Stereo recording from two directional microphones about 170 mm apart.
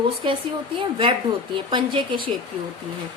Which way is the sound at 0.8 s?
30° right (ahead or behind).